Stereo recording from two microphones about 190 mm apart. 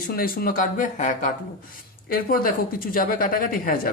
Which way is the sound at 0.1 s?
50° left (ahead or behind).